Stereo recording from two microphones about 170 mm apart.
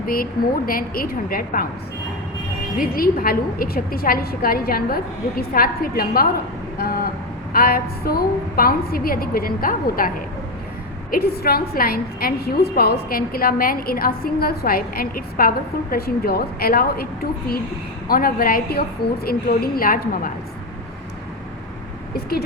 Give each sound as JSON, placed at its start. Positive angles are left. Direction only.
{"t": 0.0, "sound": "a woman's voice", "side_deg": 60}
{"t": 2.7, "sound": "a woman's voice", "side_deg": 60}
{"t": 6.7, "sound": "vehicle", "side_deg": 60}
{"t": 7.5, "sound": "a woman's voice", "side_deg": 60}
{"t": 11.1, "sound": "a woman's voice", "side_deg": 65}
{"t": 18.1, "sound": "a woman's voice", "side_deg": 60}
{"t": 22.1, "sound": "speech", "side_deg": 65}